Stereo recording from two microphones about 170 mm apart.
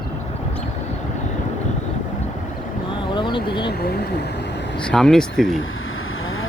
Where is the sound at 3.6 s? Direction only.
70° left (ahead or behind).